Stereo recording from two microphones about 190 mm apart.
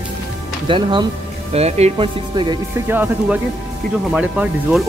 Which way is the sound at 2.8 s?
10° right (ahead or behind).